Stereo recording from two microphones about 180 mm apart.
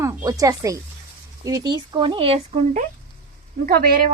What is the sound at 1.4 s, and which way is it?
Speech, 20° right (ahead or behind).